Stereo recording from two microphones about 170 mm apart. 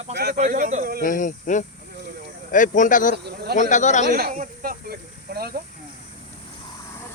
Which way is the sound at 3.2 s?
65° right (ahead or behind).